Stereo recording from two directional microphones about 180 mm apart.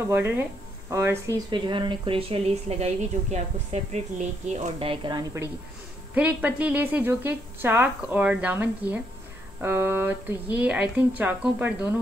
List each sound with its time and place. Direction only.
0.1 s speech: 10° right (ahead or behind)
6.1 s speech: 10° right (ahead or behind)